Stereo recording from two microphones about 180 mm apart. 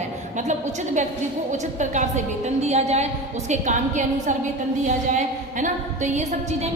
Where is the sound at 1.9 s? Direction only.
40° right (ahead or behind).